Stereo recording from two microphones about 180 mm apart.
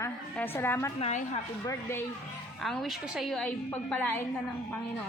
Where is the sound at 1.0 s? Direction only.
40° left (ahead or behind).